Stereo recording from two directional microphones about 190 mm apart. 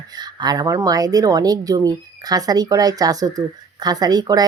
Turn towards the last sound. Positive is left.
turn(degrees=-20)  # may be behind; listen again after turning